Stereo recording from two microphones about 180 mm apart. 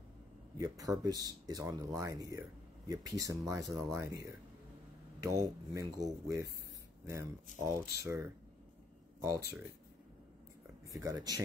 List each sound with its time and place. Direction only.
0.6 s speech: 20° right (ahead or behind)
7.6 s speech: 15° right (ahead or behind)
10.9 s speech: 20° right (ahead or behind)